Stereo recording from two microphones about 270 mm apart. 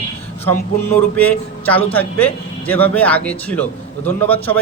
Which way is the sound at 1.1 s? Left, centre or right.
Centre.